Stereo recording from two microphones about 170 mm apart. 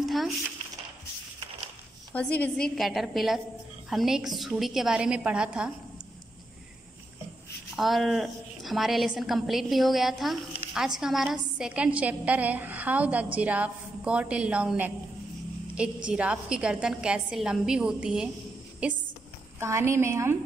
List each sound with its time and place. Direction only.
2.1 s a woman's voice: 10° left (ahead or behind)
7.7 s a woman's voice: centre (ahead or behind)
16.1 s a woman's voice: 5° right (ahead or behind)